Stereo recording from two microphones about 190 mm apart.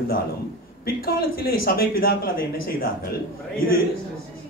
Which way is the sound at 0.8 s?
50° left (ahead or behind).